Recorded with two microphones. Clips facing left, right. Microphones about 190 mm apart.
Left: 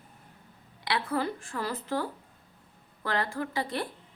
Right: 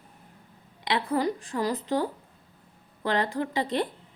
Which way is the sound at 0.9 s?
20° right (ahead or behind).